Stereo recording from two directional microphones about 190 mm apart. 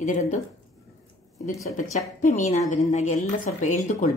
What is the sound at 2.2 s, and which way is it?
Speech, 40° left (ahead or behind).